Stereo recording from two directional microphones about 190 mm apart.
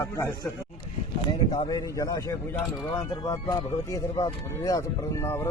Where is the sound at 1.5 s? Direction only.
20° left (ahead or behind).